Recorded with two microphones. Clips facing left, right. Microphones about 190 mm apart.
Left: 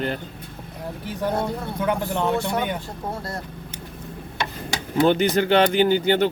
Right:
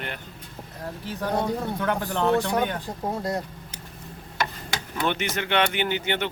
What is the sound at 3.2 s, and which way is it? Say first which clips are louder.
Speech: right 4 dB; 15° right (ahead or behind).